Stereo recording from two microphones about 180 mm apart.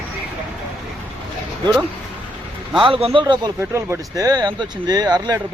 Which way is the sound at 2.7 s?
30° right (ahead or behind).